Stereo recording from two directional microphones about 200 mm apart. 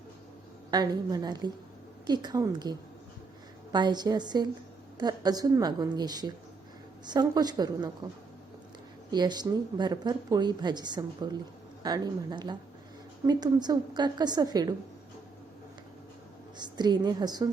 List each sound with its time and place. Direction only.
0.7 s speech: 20° right (ahead or behind)
9.0 s speech: 20° right (ahead or behind)
16.6 s speech: 20° right (ahead or behind)